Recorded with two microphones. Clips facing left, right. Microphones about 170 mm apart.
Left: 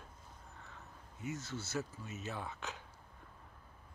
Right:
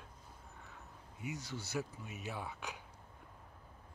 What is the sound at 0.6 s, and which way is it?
Speech, 10° right (ahead or behind).